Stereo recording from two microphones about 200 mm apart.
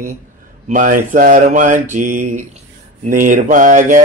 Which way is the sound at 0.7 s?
40° right (ahead or behind).